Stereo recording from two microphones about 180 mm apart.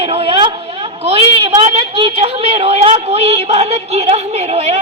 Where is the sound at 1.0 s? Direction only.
30° right (ahead or behind).